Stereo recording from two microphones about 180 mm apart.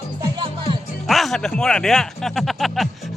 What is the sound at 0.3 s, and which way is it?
Music, 25° right (ahead or behind).